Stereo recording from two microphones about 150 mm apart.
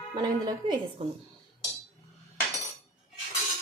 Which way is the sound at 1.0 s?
40° right (ahead or behind).